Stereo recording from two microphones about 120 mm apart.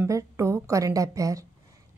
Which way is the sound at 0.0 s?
25° right (ahead or behind).